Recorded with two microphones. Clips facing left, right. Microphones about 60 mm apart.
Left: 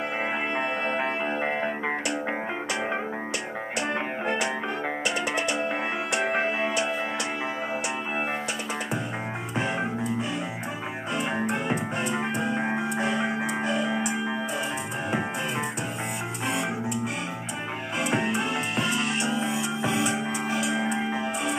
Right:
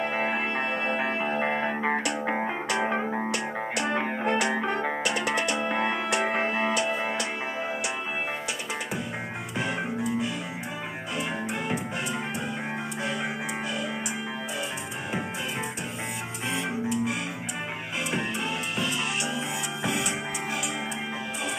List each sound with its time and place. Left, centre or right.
0.1 s music: centre
3.7 s music: left
13.0 s music: left
19.2 s music: left